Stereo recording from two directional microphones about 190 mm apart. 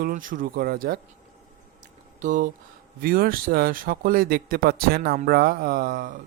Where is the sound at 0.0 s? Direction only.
45° right (ahead or behind).